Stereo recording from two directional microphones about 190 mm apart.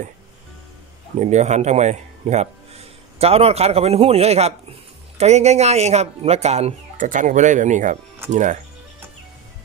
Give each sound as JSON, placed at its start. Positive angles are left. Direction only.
{"t": 1.2, "sound": "speech", "side_deg": -35}